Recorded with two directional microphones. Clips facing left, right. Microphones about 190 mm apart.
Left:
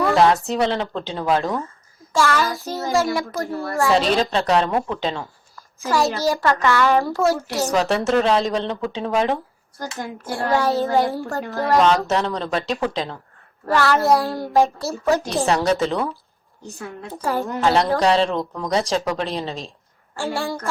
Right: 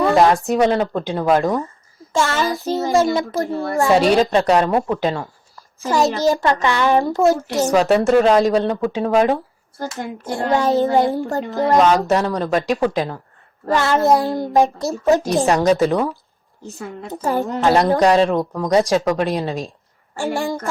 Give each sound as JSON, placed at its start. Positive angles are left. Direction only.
{"t": 0.0, "sound": "a child's voice", "side_deg": -15}
{"t": 7.7, "sound": "a child's voice", "side_deg": -10}